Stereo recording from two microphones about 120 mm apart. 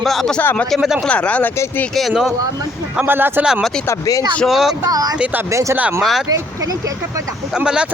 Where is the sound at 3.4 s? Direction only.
Centre (ahead or behind).